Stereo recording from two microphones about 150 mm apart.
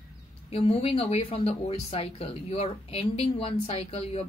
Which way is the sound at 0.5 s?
45° left (ahead or behind).